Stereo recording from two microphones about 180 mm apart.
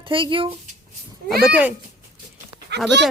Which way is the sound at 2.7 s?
75° right (ahead or behind).